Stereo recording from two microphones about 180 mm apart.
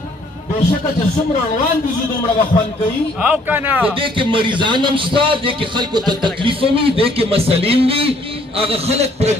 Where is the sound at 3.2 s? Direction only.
10° right (ahead or behind).